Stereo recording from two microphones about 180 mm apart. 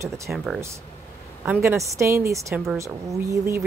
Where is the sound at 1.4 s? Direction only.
10° right (ahead or behind).